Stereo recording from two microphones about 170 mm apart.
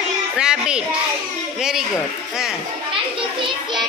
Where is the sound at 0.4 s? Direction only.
5° right (ahead or behind).